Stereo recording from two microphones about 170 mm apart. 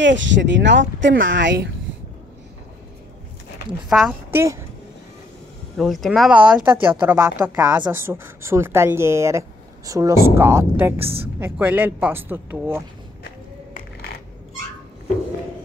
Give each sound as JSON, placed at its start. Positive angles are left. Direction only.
{"t": 0.0, "sound": "speech", "side_deg": -90}
{"t": 3.9, "sound": "speech", "side_deg": -5}
{"t": 5.8, "sound": "speech", "side_deg": 0}